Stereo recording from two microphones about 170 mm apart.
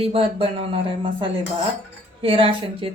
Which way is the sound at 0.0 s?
35° right (ahead or behind).